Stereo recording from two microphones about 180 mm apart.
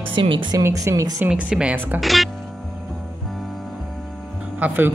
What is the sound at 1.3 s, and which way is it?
Speech, 5° right (ahead or behind).